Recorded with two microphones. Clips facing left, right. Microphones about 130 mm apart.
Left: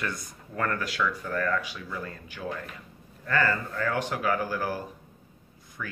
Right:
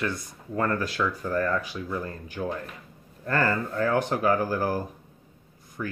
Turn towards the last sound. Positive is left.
turn(degrees=-30)  # may be behind; listen again after turning